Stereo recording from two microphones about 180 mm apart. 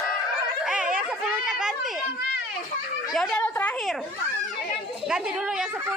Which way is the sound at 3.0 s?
Centre (ahead or behind).